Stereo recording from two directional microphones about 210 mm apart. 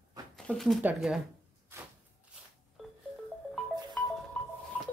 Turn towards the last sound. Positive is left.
turn(degrees=0)  # may be behind; listen again after turning